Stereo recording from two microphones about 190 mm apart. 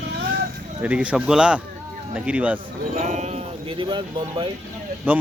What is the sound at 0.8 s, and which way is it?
Speech, 5° right (ahead or behind).